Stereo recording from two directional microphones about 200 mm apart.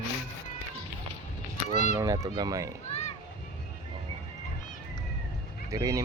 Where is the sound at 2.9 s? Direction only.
30° left (ahead or behind).